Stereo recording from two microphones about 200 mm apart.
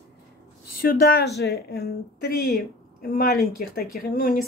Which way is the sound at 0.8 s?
50° left (ahead or behind).